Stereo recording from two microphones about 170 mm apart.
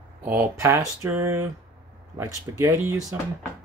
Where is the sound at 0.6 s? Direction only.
20° right (ahead or behind).